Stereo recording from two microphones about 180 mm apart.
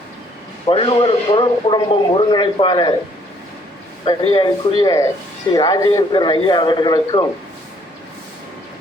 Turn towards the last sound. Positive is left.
turn(degrees=25)  # may be behind; listen again after turning